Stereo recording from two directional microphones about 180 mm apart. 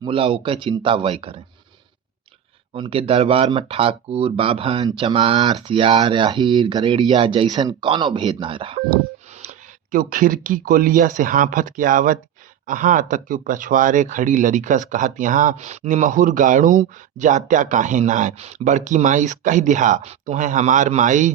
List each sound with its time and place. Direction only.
0.0 s speech: 30° right (ahead or behind)
2.7 s speech: 30° right (ahead or behind)
9.4 s a sound: 40° right (ahead or behind)
10.0 s speech: 50° right (ahead or behind)